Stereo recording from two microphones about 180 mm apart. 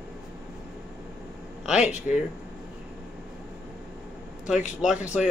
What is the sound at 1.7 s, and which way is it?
Speech, 45° left (ahead or behind).